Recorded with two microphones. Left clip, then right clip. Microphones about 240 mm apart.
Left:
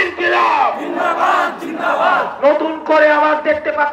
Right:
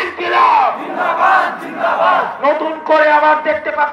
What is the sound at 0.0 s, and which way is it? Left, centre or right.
Battle cry, left.